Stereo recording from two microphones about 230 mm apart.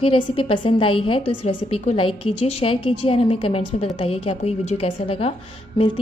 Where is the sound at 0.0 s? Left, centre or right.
Left.